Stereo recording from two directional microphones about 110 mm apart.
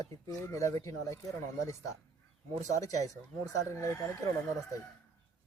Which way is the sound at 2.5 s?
90° right.